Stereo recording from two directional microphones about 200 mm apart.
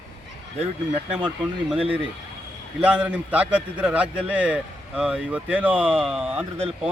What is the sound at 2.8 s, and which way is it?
A man's voice, 5° right (ahead or behind).